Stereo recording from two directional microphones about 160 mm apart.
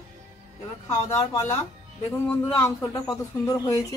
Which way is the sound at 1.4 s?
15° left (ahead or behind).